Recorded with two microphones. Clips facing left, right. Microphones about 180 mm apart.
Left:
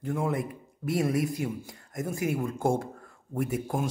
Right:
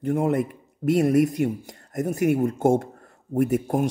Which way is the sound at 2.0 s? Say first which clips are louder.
Right 8 dB; 65° right (ahead or behind).